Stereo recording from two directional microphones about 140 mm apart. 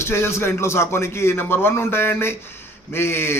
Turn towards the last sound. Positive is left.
turn(degrees=15)  # may be behind; listen again after turning